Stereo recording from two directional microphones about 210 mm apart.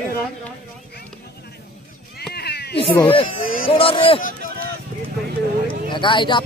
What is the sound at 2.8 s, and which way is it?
Speech, 25° left (ahead or behind).